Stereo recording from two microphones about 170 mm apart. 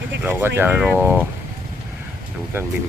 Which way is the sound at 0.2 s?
10° right (ahead or behind).